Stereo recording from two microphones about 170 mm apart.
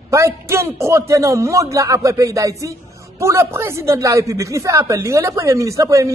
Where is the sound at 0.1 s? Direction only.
15° right (ahead or behind).